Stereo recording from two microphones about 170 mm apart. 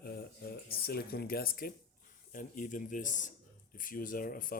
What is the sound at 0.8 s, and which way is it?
Speech, 65° left (ahead or behind).